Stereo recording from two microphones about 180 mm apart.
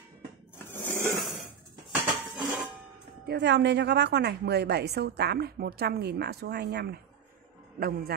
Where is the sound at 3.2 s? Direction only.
70° right (ahead or behind).